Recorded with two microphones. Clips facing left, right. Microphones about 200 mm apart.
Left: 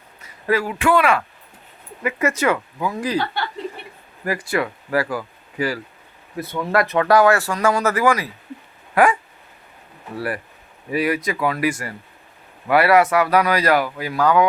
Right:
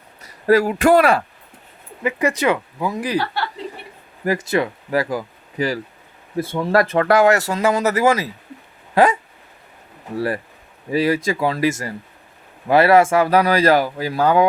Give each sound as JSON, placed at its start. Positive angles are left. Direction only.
{"t": 0.2, "sound": "speech", "side_deg": -40}
{"t": 2.0, "sound": "speech", "side_deg": -15}
{"t": 4.3, "sound": "speech", "side_deg": -25}
{"t": 10.2, "sound": "speech", "side_deg": -25}